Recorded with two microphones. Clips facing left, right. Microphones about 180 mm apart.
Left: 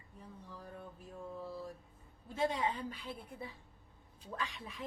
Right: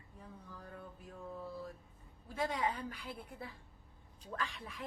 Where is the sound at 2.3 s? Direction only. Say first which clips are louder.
Left 2 dB; 25° left (ahead or behind).